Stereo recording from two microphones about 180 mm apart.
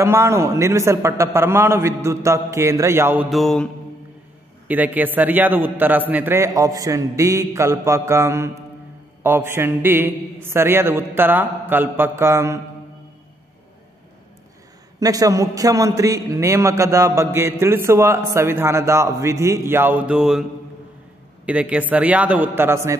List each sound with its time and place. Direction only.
0.0 s a man's voice: 15° right (ahead or behind)
3.3 s mantra: centre (ahead or behind)
4.6 s a man's voice: 10° right (ahead or behind)
15.0 s a man's voice: 20° right (ahead or behind); by 20.4 s 5° right (ahead or behind)
21.5 s a man's voice: 5° right (ahead or behind)